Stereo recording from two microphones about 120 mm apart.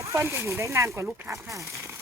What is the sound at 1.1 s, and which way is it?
Speech, 10° right (ahead or behind).